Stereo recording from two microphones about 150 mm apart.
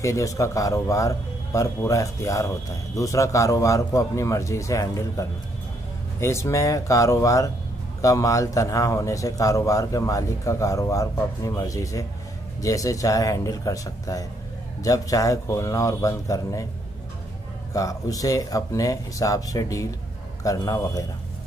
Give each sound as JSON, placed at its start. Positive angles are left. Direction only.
{"t": 0.0, "sound": "speech", "side_deg": 20}
{"t": 17.7, "sound": "speech", "side_deg": 25}